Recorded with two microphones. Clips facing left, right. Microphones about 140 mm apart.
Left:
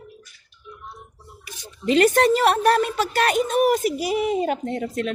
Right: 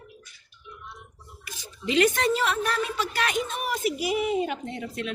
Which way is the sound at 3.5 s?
60° left (ahead or behind).